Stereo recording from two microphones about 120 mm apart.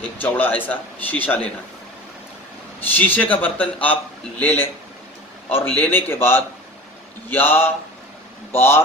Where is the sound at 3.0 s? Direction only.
15° left (ahead or behind).